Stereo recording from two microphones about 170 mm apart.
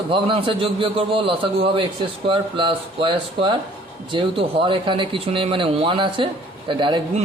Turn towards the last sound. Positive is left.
turn(degrees=-30)  # may be behind; listen again after turning